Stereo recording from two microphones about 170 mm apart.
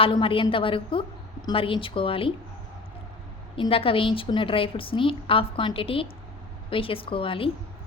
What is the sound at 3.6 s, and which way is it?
A woman's voice, 35° left (ahead or behind).